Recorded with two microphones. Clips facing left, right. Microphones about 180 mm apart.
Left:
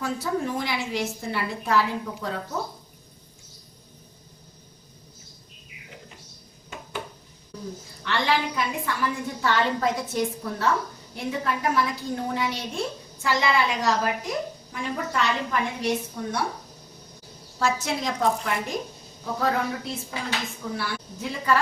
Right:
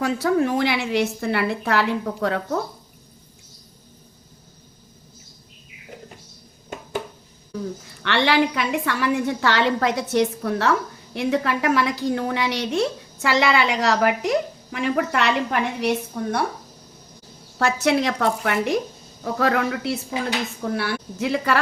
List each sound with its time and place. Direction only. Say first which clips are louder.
0.0 s a woman's voice: right 7 dB; 75° right (ahead or behind)
8.0 s a woman's voice: right 6 dB; 75° right (ahead or behind)
16.1 s speech: right 5 dB; 60° right (ahead or behind)
17.6 s a woman's voice: right 6 dB; 70° right (ahead or behind)
20.7 s a woman's voice: right 6 dB; 65° right (ahead or behind); by 21.6 s 80° right